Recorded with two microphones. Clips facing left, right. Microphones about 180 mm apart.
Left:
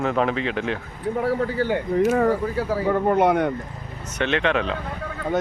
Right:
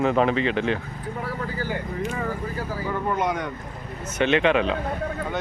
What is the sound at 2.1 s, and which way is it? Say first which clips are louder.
Speech: left 9 dB; 75° left (ahead or behind).